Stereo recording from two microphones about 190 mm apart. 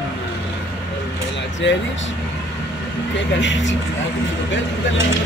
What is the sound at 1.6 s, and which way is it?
Speech, 70° left (ahead or behind).